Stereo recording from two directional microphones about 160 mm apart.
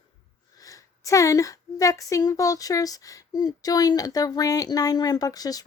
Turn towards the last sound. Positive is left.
turn(degrees=25)  # may be behind; listen again after turning